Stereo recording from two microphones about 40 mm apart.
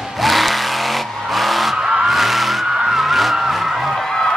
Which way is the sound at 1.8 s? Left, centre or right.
Centre.